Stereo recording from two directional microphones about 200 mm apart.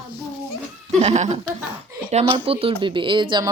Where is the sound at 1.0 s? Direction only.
35° right (ahead or behind).